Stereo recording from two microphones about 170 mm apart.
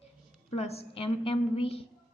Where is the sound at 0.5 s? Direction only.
40° left (ahead or behind).